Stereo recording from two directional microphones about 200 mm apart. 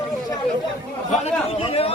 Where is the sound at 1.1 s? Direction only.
35° left (ahead or behind).